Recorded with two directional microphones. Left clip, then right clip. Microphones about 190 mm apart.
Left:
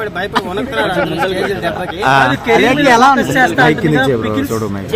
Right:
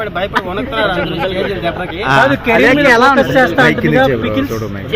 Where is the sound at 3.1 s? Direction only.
35° right (ahead or behind).